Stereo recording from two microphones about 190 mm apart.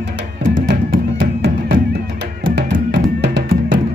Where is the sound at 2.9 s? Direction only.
65° right (ahead or behind).